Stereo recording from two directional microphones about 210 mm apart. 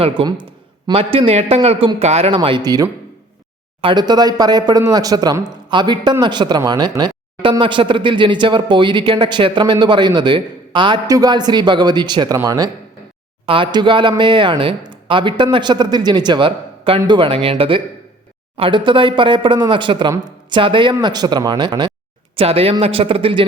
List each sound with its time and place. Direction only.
0.0 s speech: 25° right (ahead or behind)